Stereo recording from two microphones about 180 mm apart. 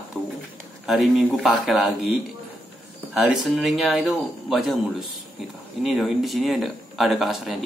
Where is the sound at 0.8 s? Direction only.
Centre (ahead or behind).